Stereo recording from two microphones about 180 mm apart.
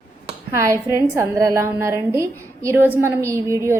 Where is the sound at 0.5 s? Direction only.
15° right (ahead or behind).